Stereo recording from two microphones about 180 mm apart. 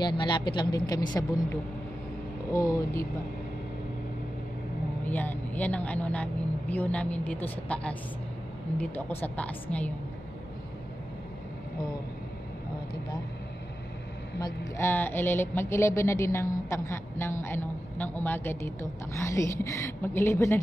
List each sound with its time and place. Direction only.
0.0 s speech: 25° left (ahead or behind)
2.5 s a woman's voice: 20° left (ahead or behind)
5.0 s a woman's voice: 10° left (ahead or behind)
14.4 s a woman's voice: 15° left (ahead or behind)